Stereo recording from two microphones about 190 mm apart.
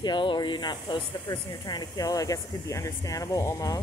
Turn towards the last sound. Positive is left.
turn(degrees=20)  # may be behind; listen again after turning